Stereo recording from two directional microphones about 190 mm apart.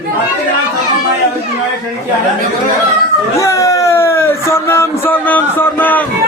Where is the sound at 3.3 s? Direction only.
15° left (ahead or behind).